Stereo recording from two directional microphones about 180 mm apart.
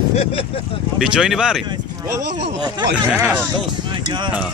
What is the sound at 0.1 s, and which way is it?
Speech, 30° left (ahead or behind).